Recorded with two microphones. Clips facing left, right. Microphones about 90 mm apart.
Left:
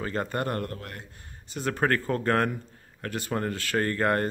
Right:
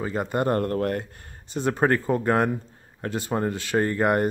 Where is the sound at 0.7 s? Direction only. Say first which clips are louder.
Right 14 dB; 50° right (ahead or behind).